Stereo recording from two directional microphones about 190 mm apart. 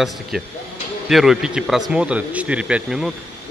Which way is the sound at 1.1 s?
Centre (ahead or behind).